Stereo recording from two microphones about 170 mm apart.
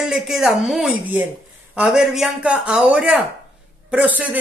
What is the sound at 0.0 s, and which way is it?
A woman's voice, centre (ahead or behind).